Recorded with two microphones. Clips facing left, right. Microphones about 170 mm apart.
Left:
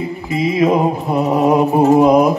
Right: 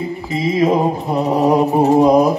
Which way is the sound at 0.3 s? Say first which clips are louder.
Left 1 dB; 30° right (ahead or behind).